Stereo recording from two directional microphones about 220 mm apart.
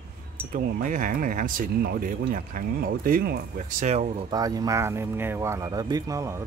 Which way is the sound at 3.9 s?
30° right (ahead or behind).